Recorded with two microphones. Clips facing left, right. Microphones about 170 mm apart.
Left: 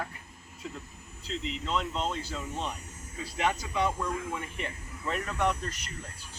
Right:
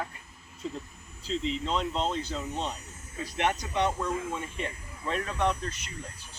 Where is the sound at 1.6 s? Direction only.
30° right (ahead or behind).